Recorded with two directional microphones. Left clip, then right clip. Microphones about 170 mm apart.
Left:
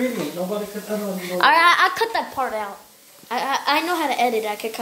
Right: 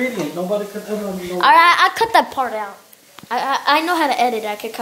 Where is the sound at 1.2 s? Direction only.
20° left (ahead or behind).